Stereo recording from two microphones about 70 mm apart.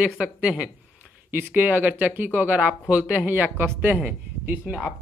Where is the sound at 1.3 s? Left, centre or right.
Right.